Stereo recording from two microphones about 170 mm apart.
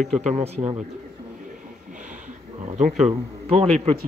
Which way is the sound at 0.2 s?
40° right (ahead or behind).